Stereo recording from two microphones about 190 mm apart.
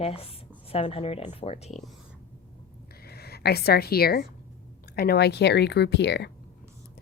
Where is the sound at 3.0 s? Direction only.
55° left (ahead or behind).